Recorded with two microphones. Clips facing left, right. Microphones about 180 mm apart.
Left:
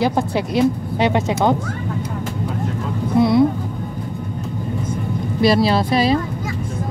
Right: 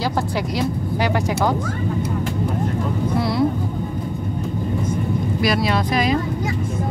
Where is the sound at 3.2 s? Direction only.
20° left (ahead or behind).